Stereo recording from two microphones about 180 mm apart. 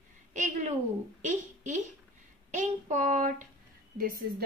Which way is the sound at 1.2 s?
45° right (ahead or behind).